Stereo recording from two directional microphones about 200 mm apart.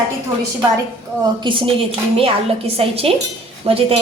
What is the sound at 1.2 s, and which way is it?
A woman's voice, 25° right (ahead or behind).